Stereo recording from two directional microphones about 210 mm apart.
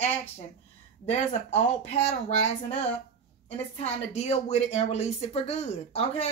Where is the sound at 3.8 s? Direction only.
30° left (ahead or behind).